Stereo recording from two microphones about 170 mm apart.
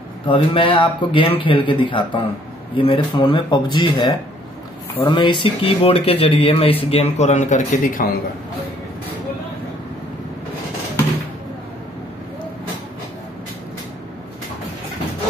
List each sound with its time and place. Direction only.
0.3 s speech: 30° left (ahead or behind); by 8.1 s 50° left (ahead or behind)